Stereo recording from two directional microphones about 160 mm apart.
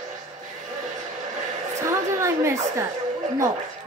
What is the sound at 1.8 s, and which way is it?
A woman's voice, 15° right (ahead or behind).